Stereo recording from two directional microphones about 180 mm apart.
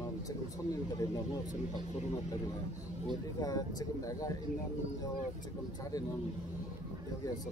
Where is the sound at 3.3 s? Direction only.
20° left (ahead or behind).